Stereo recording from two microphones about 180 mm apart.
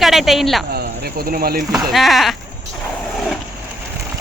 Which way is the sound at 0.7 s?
60° right (ahead or behind).